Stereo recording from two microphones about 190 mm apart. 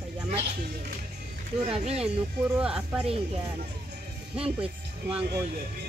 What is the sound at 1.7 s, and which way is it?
Speech, 30° right (ahead or behind).